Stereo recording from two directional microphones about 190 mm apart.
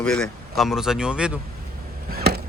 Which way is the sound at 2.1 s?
55° right (ahead or behind).